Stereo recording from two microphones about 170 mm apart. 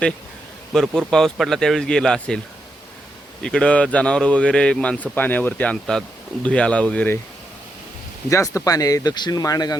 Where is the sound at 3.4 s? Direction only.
5° left (ahead or behind).